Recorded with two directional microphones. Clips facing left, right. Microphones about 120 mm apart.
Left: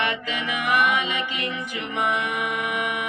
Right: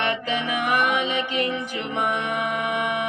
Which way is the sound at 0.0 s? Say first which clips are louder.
Right 2 dB; 35° right (ahead or behind).